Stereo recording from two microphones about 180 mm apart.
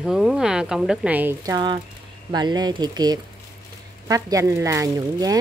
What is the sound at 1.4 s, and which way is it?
Speech, 25° right (ahead or behind).